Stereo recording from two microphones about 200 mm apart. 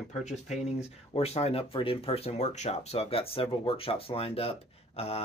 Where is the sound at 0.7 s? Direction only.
30° left (ahead or behind).